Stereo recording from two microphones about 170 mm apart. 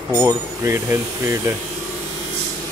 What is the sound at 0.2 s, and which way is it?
Speech, 15° right (ahead or behind).